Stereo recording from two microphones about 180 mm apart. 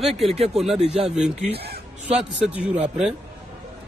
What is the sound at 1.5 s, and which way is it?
Speech, 65° right (ahead or behind).